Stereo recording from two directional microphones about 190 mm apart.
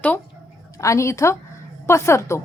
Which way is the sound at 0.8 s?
15° left (ahead or behind).